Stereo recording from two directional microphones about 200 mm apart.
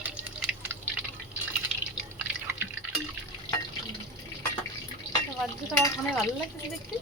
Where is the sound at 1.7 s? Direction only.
5° right (ahead or behind).